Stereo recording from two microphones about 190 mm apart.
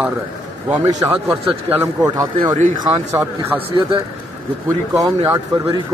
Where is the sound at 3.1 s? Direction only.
15° right (ahead or behind).